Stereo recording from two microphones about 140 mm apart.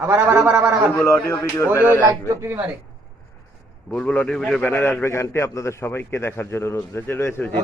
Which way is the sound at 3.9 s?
10° left (ahead or behind).